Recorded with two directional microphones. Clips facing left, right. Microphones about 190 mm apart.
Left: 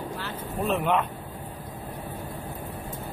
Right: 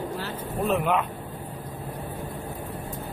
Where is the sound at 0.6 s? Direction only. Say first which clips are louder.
Right 1 dB; centre (ahead or behind).